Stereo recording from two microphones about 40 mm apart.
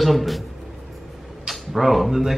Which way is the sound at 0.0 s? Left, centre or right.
Centre.